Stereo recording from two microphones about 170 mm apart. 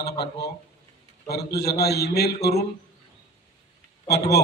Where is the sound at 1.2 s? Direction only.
70° left (ahead or behind).